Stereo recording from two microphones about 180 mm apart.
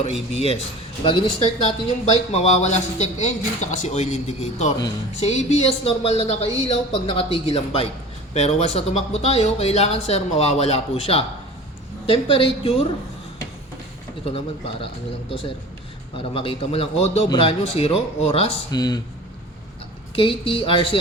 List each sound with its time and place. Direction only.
0.0 s speech: 35° left (ahead or behind)
14.3 s speech: 30° left (ahead or behind)
16.1 s speech: 30° left (ahead or behind)
18.7 s speech: 20° left (ahead or behind)
20.1 s speech: 30° left (ahead or behind)